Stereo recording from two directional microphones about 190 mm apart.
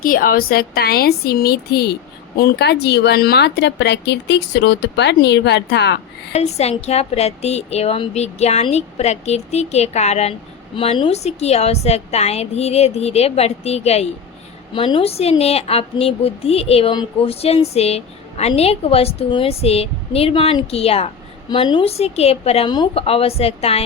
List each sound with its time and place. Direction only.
0.0 s speech: 50° left (ahead or behind); by 6.0 s 65° left (ahead or behind)
6.3 s a woman's voice: 35° left (ahead or behind)